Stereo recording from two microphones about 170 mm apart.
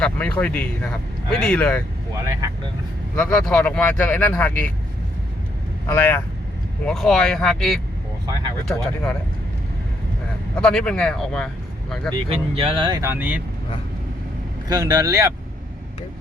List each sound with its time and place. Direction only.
0.0 s speech: 5° left (ahead or behind)
2.2 s speech: 20° right (ahead or behind)
3.2 s speech: 5° left (ahead or behind)
5.8 s speech: 10° left (ahead or behind)
10.5 s speech: 5° left (ahead or behind)
12.1 s speech: 30° right (ahead or behind)
13.1 s speech: 10° right (ahead or behind)
14.7 s speech: 20° right (ahead or behind)